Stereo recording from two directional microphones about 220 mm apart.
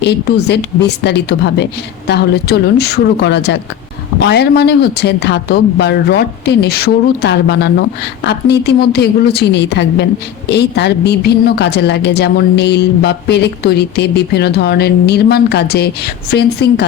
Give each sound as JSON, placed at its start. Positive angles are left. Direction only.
{"t": 0.0, "sound": "speech", "side_deg": 50}